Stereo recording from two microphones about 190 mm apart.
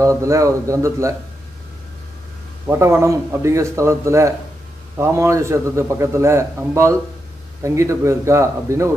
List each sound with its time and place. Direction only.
0.0 s a man's voice: 15° right (ahead or behind)
2.6 s a man's voice: 15° right (ahead or behind)